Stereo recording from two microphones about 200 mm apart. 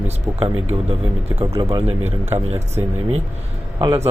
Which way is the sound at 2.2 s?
30° right (ahead or behind).